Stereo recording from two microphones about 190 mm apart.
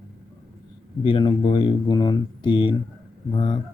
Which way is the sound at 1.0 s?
25° left (ahead or behind).